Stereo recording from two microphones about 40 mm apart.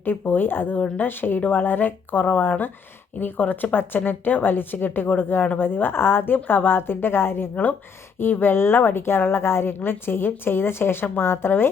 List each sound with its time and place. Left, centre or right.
0.0 s speech: left
1.4 s speech: left
1.6 s a woman's voice: left
7.5 s speech: left
8.2 s a woman's voice: left